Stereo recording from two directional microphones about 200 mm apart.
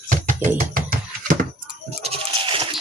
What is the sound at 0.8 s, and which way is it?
Music, 45° right (ahead or behind).